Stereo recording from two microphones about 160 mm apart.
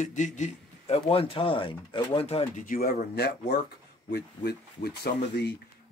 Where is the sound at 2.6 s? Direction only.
65° left (ahead or behind).